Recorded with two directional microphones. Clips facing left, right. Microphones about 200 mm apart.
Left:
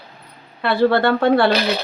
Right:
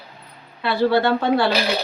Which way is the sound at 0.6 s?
55° left (ahead or behind).